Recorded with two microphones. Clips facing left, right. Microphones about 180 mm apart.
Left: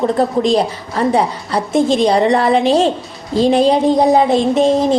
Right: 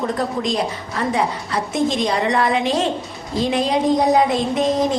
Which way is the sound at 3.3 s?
30° left (ahead or behind).